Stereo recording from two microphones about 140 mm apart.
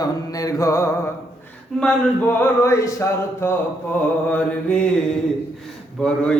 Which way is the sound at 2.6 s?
20° left (ahead or behind).